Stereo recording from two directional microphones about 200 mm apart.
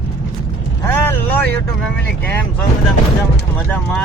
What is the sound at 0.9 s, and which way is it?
Vehicle, 10° left (ahead or behind).